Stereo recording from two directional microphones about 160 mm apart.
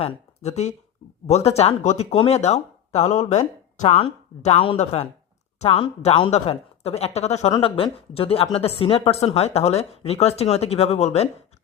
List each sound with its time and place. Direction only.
0.0 s a woman's voice: 40° left (ahead or behind)